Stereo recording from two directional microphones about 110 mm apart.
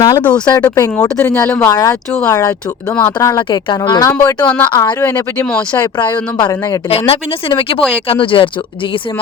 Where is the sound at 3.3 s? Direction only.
45° left (ahead or behind).